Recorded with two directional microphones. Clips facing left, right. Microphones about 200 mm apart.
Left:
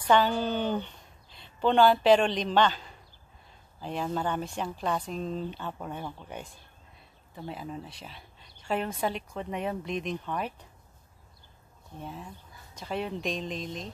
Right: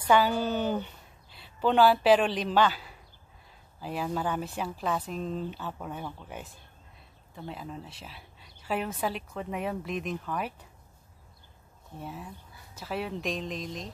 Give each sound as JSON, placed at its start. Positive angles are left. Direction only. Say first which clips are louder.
{"t": 0.0, "sound": "a woman's voice", "louder": "even", "side_deg": -10}
{"t": 12.0, "sound": "a woman's voice", "louder": "even", "side_deg": -10}